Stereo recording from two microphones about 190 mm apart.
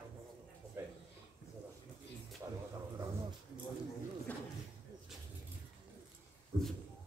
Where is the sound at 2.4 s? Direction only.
15° right (ahead or behind).